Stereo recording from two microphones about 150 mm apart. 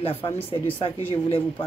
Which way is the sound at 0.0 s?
35° left (ahead or behind).